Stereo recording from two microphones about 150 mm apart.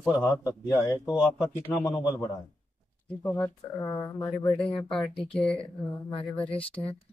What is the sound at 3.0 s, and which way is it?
Speech, 10° left (ahead or behind).